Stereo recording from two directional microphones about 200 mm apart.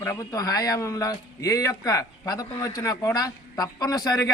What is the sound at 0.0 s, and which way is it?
A man's voice, 15° left (ahead or behind).